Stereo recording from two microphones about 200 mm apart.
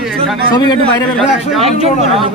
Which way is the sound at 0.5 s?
20° left (ahead or behind).